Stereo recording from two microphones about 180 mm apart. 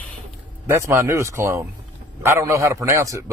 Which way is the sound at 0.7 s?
15° right (ahead or behind).